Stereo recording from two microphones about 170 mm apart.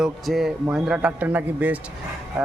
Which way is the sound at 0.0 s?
Centre (ahead or behind).